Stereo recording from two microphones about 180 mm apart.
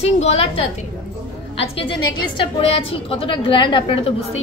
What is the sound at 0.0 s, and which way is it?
Speech, 35° left (ahead or behind).